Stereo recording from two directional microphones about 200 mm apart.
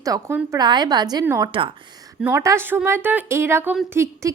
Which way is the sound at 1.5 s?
25° right (ahead or behind).